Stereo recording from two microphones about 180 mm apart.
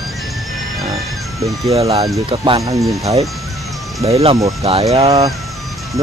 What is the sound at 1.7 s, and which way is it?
Speech, 35° right (ahead or behind).